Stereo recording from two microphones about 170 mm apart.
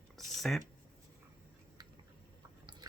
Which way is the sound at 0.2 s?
Centre (ahead or behind).